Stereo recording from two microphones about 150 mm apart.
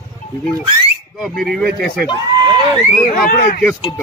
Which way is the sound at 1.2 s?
Centre (ahead or behind).